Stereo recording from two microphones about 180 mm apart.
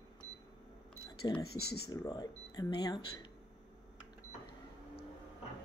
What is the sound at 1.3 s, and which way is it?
Speech, 20° left (ahead or behind).